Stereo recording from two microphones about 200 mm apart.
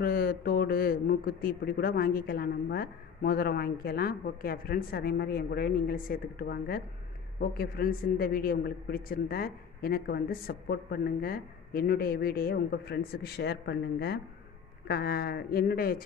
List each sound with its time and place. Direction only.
0.0 s speech: 50° left (ahead or behind)